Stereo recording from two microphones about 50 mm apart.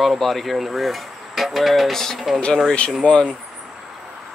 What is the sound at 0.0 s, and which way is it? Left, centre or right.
Speech, centre.